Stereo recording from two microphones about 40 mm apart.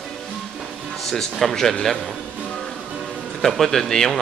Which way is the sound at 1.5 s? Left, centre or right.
Centre.